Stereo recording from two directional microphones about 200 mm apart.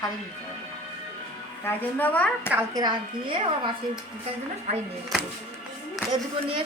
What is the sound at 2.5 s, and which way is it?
Speech, 20° right (ahead or behind).